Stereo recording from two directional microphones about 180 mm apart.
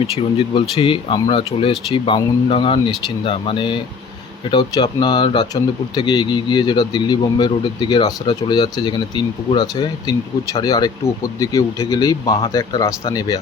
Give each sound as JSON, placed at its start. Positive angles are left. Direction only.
{"t": 0.0, "sound": "speech", "side_deg": 30}